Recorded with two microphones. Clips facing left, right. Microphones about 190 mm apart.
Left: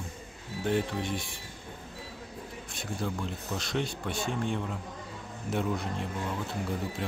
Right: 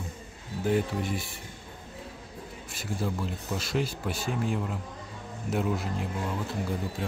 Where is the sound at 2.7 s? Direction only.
5° right (ahead or behind).